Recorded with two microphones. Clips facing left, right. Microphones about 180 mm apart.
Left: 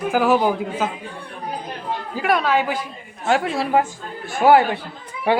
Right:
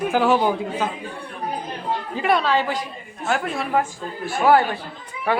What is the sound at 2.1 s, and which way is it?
Speech, 5° left (ahead or behind).